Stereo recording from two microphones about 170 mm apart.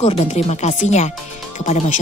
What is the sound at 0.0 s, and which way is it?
Speech, 40° left (ahead or behind).